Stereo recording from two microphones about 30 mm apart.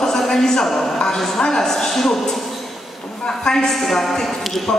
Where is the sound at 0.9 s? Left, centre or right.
Left.